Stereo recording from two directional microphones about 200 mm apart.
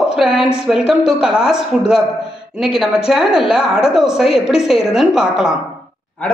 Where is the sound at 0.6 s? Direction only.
5° right (ahead or behind).